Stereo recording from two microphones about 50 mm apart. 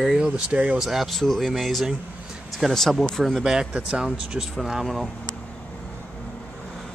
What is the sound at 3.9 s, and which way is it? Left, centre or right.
Speech, centre.